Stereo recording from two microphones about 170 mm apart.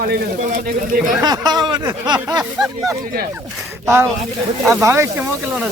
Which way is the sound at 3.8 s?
15° right (ahead or behind).